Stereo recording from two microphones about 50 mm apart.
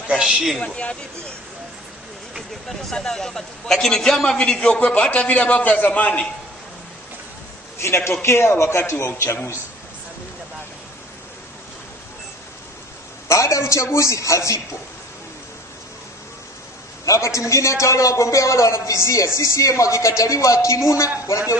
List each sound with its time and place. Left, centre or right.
0.1 s a man's voice: centre
0.6 s a man's voice: left
2.8 s a man's voice: centre; by 6.2 s left
7.8 s a man's voice: left
13.3 s a man's voice: left
17.0 s a man's voice: left